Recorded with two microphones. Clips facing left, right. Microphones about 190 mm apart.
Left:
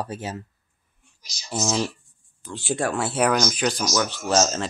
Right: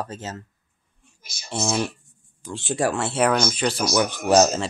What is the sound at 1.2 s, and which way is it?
Speech, 55° right (ahead or behind).